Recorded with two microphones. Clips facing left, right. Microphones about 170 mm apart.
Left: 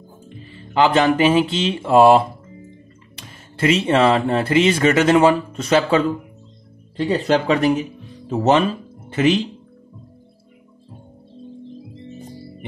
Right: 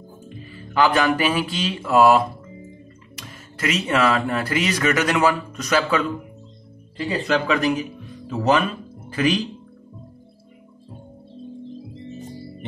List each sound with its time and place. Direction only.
0.5 s speech: 25° left (ahead or behind)
7.2 s speech: 30° left (ahead or behind)